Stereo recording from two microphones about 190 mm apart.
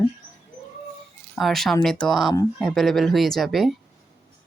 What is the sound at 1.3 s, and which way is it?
Speech, centre (ahead or behind).